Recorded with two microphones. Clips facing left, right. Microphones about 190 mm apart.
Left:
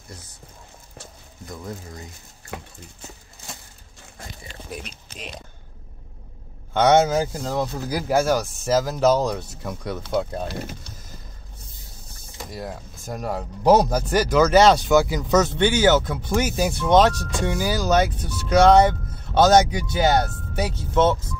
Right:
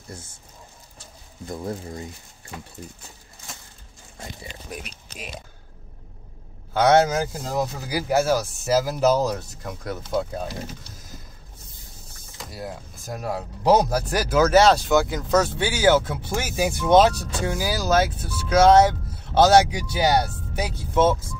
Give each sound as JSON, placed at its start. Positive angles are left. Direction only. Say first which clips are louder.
{"t": 1.5, "sound": "speech", "louder": "right 5 dB", "side_deg": -30}
{"t": 4.6, "sound": "speech", "louder": "left 3 dB", "side_deg": -5}
{"t": 6.7, "sound": "speech", "louder": "left 1 dB", "side_deg": -5}
{"t": 12.4, "sound": "speech", "louder": "left 1 dB", "side_deg": 0}